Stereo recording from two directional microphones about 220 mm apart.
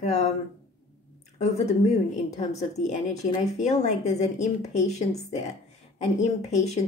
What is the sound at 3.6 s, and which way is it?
Speech, 30° left (ahead or behind).